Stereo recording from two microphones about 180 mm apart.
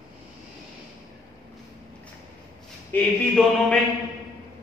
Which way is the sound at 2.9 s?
5° left (ahead or behind).